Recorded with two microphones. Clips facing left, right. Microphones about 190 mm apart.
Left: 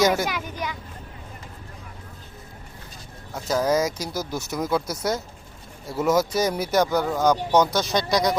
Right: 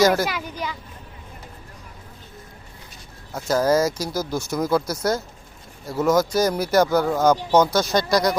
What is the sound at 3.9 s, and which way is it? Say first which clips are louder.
Speech: right 3 dB; 20° left (ahead or behind).